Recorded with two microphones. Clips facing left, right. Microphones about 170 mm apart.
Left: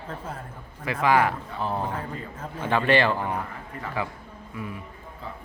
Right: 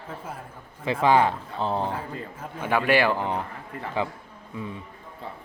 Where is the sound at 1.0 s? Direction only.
25° right (ahead or behind).